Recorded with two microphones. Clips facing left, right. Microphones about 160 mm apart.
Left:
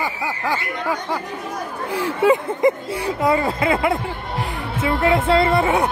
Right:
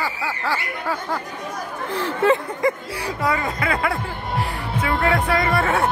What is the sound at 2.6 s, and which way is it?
Speech, 25° left (ahead or behind).